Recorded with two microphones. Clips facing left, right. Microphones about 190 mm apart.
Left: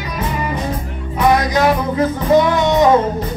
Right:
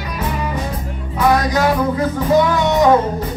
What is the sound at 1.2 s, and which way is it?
Music, 20° left (ahead or behind).